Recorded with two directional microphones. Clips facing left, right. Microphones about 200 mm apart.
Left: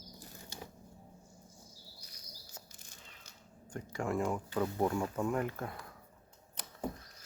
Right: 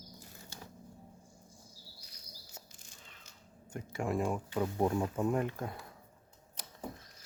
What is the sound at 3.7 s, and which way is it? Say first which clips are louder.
Speech: right 1 dB; 25° right (ahead or behind).